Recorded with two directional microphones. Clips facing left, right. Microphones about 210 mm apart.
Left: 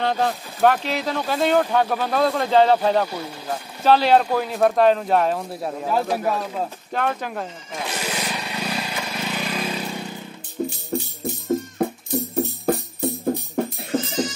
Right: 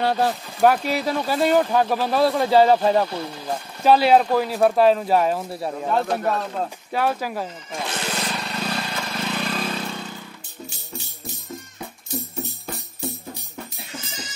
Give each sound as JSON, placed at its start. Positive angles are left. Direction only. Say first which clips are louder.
{"t": 0.0, "sound": "speech", "louder": "right 1 dB", "side_deg": -5}
{"t": 3.1, "sound": "speech", "louder": "right 1 dB", "side_deg": 5}
{"t": 3.4, "sound": "speech", "louder": "right 1 dB", "side_deg": -10}
{"t": 6.9, "sound": "a sound", "louder": "right 3 dB", "side_deg": -5}
{"t": 10.9, "sound": "music", "louder": "left 11 dB", "side_deg": 55}